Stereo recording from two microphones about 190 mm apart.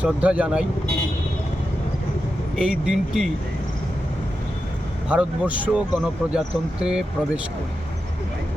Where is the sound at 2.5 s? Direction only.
5° right (ahead or behind).